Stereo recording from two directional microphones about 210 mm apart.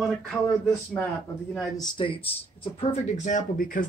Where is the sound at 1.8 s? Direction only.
25° left (ahead or behind).